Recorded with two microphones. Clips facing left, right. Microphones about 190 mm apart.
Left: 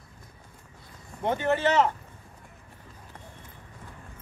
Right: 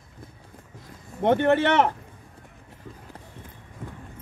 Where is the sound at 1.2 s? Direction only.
60° right (ahead or behind).